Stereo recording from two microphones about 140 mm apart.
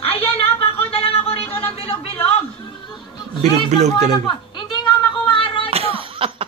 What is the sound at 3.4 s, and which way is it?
Speech, 55° right (ahead or behind).